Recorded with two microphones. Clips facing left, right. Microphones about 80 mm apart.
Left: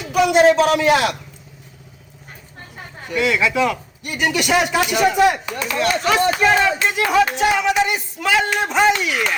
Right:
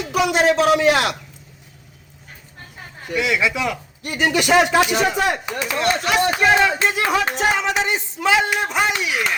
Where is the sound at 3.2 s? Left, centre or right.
Centre.